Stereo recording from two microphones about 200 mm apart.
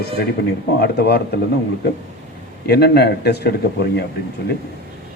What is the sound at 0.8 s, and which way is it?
Speech, 55° left (ahead or behind).